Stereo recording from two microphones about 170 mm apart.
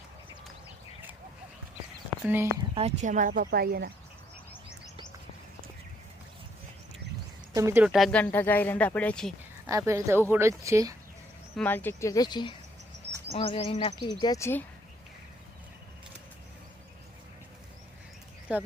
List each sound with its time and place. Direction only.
2.0 s chicken: 10° right (ahead or behind)
2.7 s speech: 45° right (ahead or behind); by 3.9 s 65° right (ahead or behind)
7.5 s speech: 15° right (ahead or behind)
7.9 s speech: centre (ahead or behind)
9.6 s speech: 15° right (ahead or behind)
11.5 s speech: 10° left (ahead or behind)
18.5 s speech: 5° right (ahead or behind)